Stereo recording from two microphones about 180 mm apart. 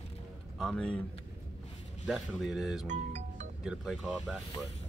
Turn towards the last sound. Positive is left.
turn(degrees=0)  # may be behind; listen again after turning